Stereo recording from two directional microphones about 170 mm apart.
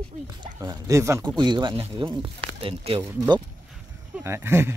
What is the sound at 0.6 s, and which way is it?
Speech, 20° right (ahead or behind).